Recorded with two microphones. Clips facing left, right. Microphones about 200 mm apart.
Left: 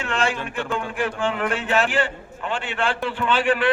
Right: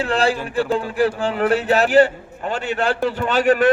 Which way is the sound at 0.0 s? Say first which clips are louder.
Right 5 dB; 35° right (ahead or behind).